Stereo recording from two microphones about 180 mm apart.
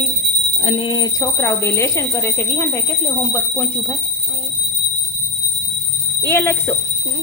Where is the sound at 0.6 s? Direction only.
30° left (ahead or behind); by 3.9 s 10° left (ahead or behind).